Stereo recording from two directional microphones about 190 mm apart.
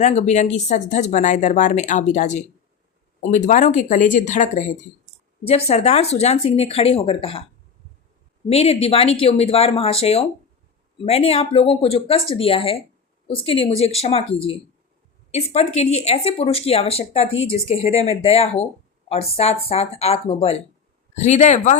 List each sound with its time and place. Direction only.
0.0 s speech: 35° left (ahead or behind)
8.4 s speech: 30° left (ahead or behind)